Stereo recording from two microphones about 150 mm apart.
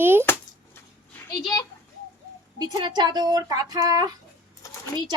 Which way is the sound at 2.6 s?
30° right (ahead or behind).